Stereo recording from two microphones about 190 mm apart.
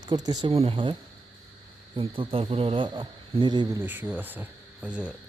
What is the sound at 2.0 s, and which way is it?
Speech, 30° right (ahead or behind).